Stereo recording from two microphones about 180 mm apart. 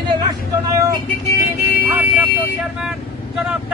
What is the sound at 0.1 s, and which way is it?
Vehicle, 20° right (ahead or behind).